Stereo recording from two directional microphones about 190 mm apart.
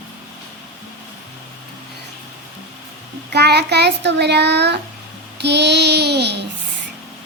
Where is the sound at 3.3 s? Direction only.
60° right (ahead or behind).